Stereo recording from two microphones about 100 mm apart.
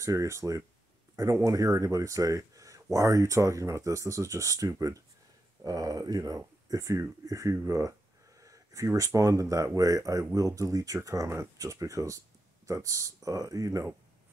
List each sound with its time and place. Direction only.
0.0 s speech: 30° right (ahead or behind)